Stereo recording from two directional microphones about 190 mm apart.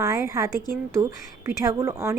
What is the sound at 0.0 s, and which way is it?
A woman's voice, 15° right (ahead or behind).